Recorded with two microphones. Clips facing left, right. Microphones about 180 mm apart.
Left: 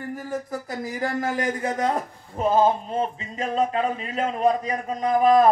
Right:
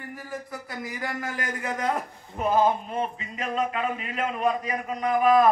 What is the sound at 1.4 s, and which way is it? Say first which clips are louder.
A man's voice: left 3 dB; 35° left (ahead or behind).